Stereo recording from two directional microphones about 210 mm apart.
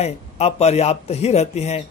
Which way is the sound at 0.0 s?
30° left (ahead or behind).